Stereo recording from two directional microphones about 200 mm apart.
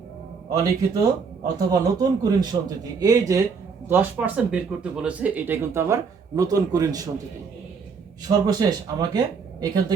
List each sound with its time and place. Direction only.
0.6 s speech: 15° right (ahead or behind)
8.3 s speech: 20° right (ahead or behind)